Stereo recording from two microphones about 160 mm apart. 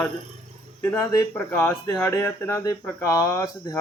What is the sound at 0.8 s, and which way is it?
Speech, 15° left (ahead or behind).